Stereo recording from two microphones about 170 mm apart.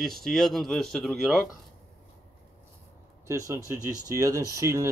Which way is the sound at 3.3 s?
15° right (ahead or behind).